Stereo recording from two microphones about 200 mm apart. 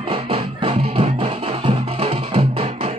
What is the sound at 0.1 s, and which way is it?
Music, 25° right (ahead or behind).